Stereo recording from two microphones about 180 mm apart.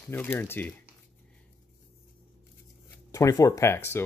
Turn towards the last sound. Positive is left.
turn(degrees=15)  # may be behind; listen again after turning